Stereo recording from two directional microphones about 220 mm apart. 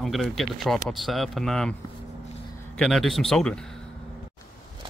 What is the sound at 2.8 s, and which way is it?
Speech, centre (ahead or behind).